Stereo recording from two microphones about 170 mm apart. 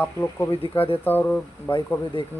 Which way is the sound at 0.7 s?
35° left (ahead or behind).